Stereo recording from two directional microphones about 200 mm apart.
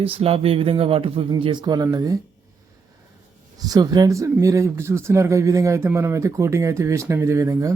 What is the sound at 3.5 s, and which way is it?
Speech, 20° right (ahead or behind).